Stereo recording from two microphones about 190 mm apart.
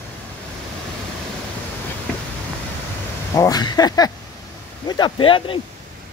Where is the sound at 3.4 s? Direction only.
20° left (ahead or behind).